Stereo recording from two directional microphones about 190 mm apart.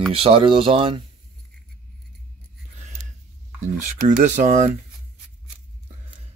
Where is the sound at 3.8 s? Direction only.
40° right (ahead or behind).